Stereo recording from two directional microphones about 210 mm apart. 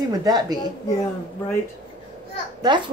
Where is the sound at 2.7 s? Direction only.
20° right (ahead or behind).